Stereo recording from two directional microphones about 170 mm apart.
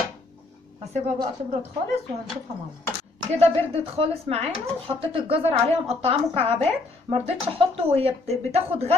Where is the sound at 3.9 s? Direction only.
35° right (ahead or behind).